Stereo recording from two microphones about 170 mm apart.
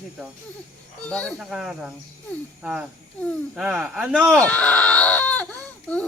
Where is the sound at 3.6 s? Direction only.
5° right (ahead or behind).